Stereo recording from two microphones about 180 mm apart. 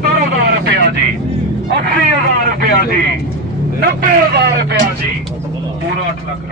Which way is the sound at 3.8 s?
55° right (ahead or behind).